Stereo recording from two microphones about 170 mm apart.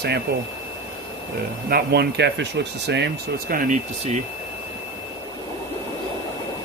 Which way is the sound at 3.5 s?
55° right (ahead or behind).